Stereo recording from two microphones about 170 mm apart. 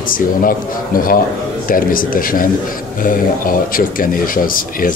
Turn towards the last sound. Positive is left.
turn(degrees=55)  # may be behind; listen again after turning